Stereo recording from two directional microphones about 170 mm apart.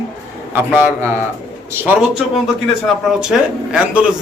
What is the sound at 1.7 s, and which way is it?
Speech, 15° right (ahead or behind).